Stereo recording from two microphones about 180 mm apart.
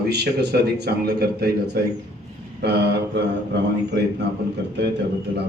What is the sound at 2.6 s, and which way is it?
Speech, 70° right (ahead or behind).